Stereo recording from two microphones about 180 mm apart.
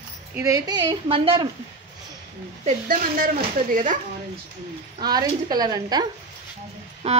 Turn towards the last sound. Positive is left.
turn(degrees=-35)  # may be behind; listen again after turning